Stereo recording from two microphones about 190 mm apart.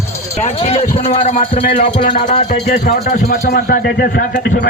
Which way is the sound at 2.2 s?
40° left (ahead or behind).